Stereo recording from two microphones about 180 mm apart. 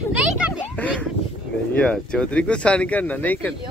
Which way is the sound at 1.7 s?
5° left (ahead or behind).